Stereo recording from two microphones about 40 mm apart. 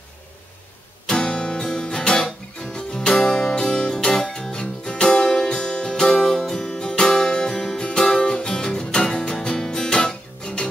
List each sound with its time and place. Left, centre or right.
1.0 s guitar: centre
1.6 s music: centre